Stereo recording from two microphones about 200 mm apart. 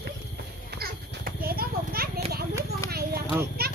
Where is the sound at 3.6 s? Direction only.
50° right (ahead or behind).